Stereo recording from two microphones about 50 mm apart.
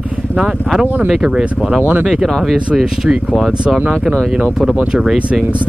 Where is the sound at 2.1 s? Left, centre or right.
Centre.